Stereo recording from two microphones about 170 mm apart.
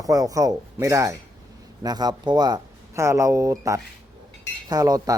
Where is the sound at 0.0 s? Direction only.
20° right (ahead or behind).